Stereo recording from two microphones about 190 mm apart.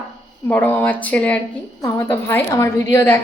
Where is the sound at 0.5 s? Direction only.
10° left (ahead or behind).